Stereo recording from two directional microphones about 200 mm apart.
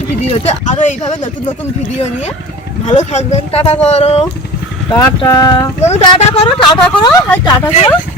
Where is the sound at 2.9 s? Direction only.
35° left (ahead or behind).